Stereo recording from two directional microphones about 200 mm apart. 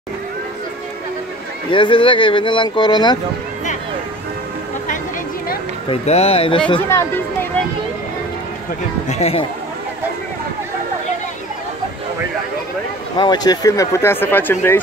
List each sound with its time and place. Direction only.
1.7 s speech: 25° left (ahead or behind)
5.9 s speech: 30° left (ahead or behind)
6.9 s speech: 15° left (ahead or behind)
9.2 s speech: 30° left (ahead or behind)
13.2 s speech: 20° left (ahead or behind)